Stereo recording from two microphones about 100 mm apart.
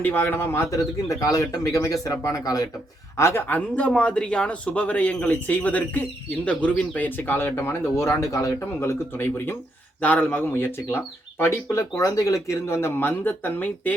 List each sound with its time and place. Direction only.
0.0 s a man's voice: 20° left (ahead or behind); by 2.6 s 40° left (ahead or behind)
3.2 s speech: 25° left (ahead or behind)